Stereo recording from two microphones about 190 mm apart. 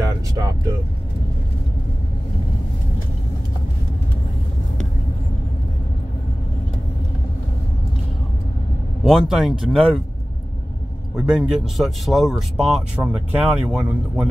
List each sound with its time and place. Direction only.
0.0 s a sound: 15° right (ahead or behind)
9.0 s speech: centre (ahead or behind)
11.1 s speech: 5° right (ahead or behind)